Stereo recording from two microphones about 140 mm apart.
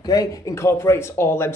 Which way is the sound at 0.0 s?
25° left (ahead or behind).